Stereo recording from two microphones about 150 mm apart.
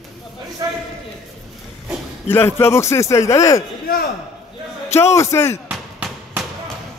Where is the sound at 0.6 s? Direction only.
20° right (ahead or behind).